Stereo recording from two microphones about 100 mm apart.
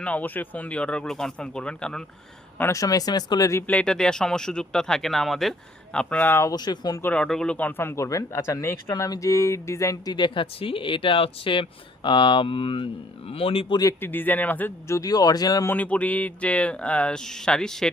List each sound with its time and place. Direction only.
0.0 s speech: 15° left (ahead or behind)
2.7 s speech: 40° left (ahead or behind)
3.7 s speech: 10° left (ahead or behind)
6.5 s speech: 40° left (ahead or behind)
7.0 s speech: 10° left (ahead or behind); by 13.7 s 70° left (ahead or behind)
14.0 s speech: 20° left (ahead or behind)
14.8 s speech: 35° left (ahead or behind)
15.6 s speech: 15° left (ahead or behind)